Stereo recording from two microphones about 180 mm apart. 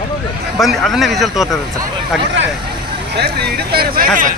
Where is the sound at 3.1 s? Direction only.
65° right (ahead or behind).